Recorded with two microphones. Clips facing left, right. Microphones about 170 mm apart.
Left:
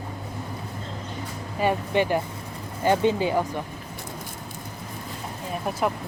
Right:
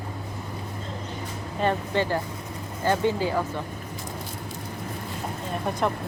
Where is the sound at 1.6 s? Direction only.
15° left (ahead or behind).